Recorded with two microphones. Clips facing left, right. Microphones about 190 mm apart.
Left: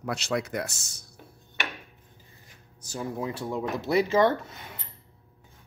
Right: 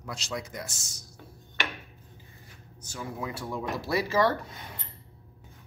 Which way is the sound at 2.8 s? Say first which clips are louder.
Left 4 dB; 35° left (ahead or behind).